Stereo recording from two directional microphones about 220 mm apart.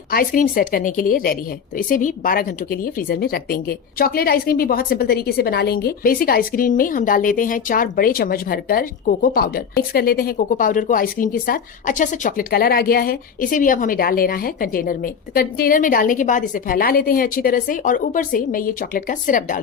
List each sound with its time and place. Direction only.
0.1 s speech: 40° left (ahead or behind)